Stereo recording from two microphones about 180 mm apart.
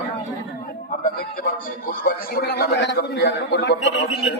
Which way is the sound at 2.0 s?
60° left (ahead or behind).